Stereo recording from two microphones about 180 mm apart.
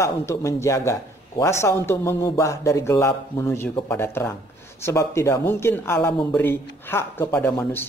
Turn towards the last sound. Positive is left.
turn(degrees=10)  # may be behind; listen again after turning